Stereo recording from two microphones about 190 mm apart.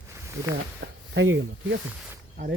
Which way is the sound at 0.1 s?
15° right (ahead or behind).